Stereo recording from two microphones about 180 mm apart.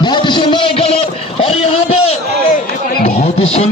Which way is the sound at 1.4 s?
35° left (ahead or behind).